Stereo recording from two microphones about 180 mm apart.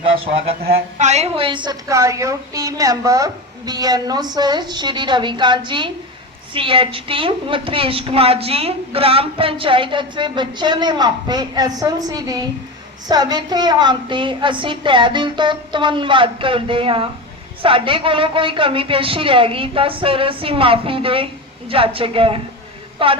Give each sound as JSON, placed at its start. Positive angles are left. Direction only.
{"t": 0.9, "sound": "a woman's voice", "side_deg": -40}